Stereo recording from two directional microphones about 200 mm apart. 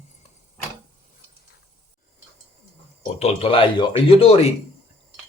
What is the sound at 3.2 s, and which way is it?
Speech, 30° left (ahead or behind).